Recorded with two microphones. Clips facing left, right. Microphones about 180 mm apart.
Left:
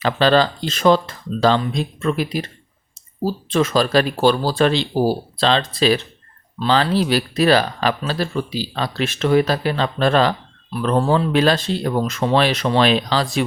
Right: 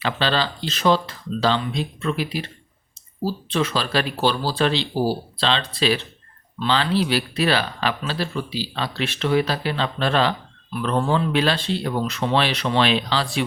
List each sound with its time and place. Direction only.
0.0 s speech: 45° left (ahead or behind)